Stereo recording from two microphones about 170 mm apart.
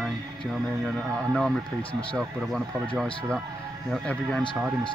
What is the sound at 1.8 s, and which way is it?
Speech, 30° left (ahead or behind).